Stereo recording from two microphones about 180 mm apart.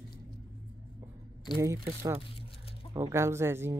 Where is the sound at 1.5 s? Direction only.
20° right (ahead or behind).